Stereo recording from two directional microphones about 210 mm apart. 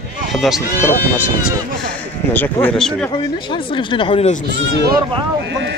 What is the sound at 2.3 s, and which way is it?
Speech, 10° left (ahead or behind).